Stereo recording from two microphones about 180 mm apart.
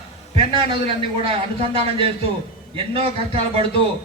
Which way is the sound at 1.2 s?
35° right (ahead or behind).